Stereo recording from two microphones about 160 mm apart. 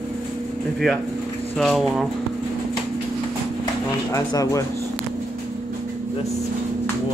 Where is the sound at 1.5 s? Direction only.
Centre (ahead or behind).